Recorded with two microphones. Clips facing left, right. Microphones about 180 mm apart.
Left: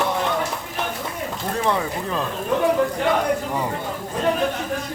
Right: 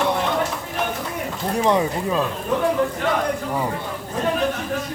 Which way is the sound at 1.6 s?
15° right (ahead or behind).